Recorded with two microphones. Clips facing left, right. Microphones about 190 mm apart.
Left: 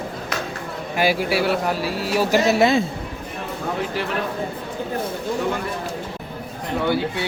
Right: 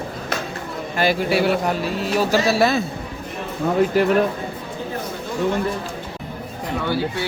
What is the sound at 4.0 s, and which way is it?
Speech, 45° right (ahead or behind).